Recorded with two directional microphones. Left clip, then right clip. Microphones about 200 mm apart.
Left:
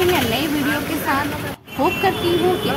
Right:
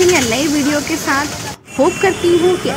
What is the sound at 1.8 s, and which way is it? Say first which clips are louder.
Speech: right 5 dB; 20° right (ahead or behind).